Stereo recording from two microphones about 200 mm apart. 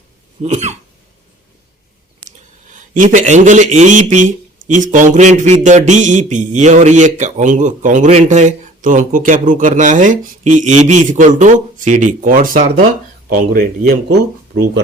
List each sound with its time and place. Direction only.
0.4 s a man's voice: 35° right (ahead or behind)
2.9 s a man's voice: 40° right (ahead or behind)